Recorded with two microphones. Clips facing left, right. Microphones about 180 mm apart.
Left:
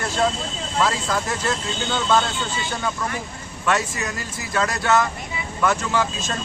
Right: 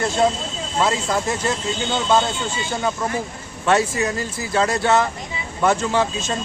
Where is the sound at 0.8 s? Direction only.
25° right (ahead or behind).